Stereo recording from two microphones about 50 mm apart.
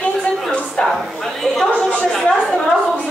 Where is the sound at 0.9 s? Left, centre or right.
Centre.